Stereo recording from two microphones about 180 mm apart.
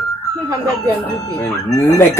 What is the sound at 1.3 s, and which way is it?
Speech, 20° left (ahead or behind).